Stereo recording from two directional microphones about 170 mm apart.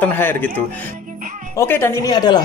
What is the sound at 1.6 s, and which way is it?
Speech, 15° left (ahead or behind).